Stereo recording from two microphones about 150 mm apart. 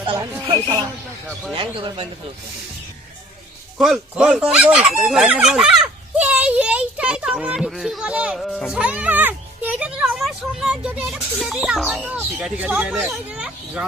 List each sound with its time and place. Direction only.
1.5 s speech: 35° right (ahead or behind)
3.8 s speech: 5° right (ahead or behind)